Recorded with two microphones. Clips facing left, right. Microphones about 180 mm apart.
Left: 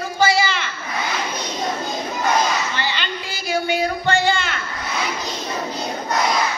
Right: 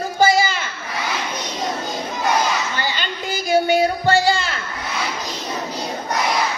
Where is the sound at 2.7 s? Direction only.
45° right (ahead or behind).